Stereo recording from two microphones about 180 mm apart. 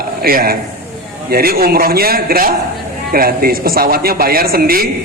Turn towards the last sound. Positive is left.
turn(degrees=-55)  # may be behind; listen again after turning